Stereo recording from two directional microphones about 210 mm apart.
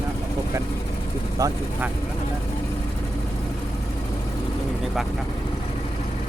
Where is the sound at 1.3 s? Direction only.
15° right (ahead or behind).